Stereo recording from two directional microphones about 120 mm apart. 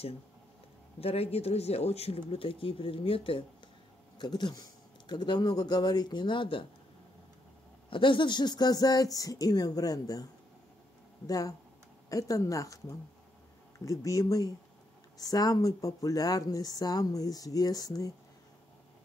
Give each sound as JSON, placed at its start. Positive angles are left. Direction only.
{"t": 1.0, "sound": "speech", "side_deg": 55}
{"t": 4.2, "sound": "speech", "side_deg": 35}
{"t": 7.9, "sound": "speech", "side_deg": 45}
{"t": 11.2, "sound": "speech", "side_deg": 30}